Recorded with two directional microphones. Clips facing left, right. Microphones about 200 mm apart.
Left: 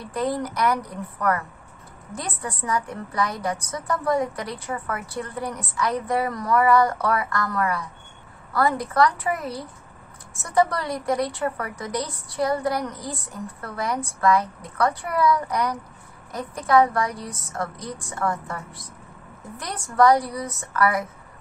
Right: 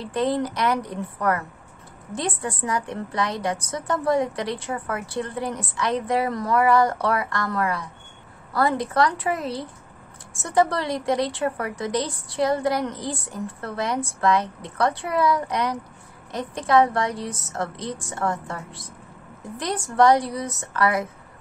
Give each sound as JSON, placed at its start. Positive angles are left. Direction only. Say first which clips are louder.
{"t": 0.0, "sound": "a woman's voice", "louder": "right 3 dB", "side_deg": -25}
{"t": 3.1, "sound": "a woman's voice", "louder": "even", "side_deg": -25}
{"t": 19.6, "sound": "a woman's voice", "louder": "even", "side_deg": -25}